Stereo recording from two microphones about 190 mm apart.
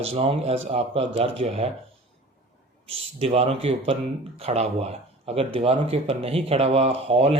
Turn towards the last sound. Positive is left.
turn(degrees=-30)  # may be behind; listen again after turning